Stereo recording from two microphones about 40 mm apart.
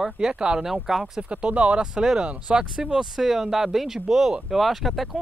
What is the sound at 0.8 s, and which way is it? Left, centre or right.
Speech, centre.